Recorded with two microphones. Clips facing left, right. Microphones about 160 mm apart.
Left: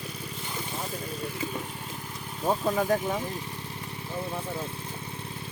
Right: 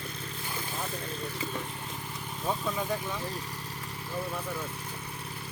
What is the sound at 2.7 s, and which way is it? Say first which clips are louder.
Speech: left 7 dB; 45° left (ahead or behind).